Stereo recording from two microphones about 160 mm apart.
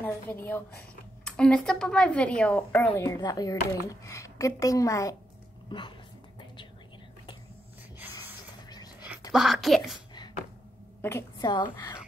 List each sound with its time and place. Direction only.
0.0 s a woman's voice: 10° left (ahead or behind); by 5.9 s 30° left (ahead or behind)
9.3 s speech: centre (ahead or behind)
11.0 s a woman's voice: 15° left (ahead or behind)
11.3 s a woman's voice: 30° left (ahead or behind)